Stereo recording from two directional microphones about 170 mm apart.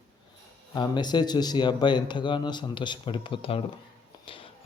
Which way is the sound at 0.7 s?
25° left (ahead or behind).